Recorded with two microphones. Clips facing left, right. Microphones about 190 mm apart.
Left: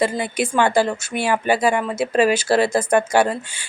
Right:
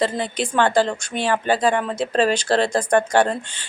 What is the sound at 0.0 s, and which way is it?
A woman's voice, 10° left (ahead or behind).